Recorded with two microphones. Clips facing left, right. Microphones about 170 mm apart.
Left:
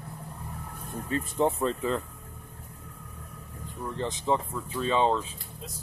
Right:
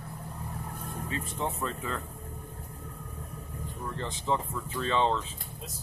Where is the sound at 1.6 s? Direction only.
25° left (ahead or behind).